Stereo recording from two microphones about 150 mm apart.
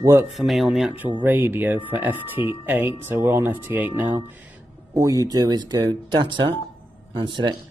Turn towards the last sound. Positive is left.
turn(degrees=-30)  # may be behind; listen again after turning